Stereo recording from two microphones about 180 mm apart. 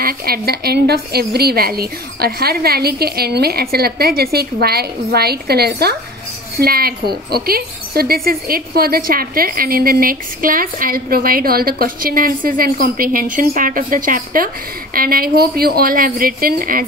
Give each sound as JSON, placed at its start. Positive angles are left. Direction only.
{"t": 0.0, "sound": "a woman's voice", "side_deg": -55}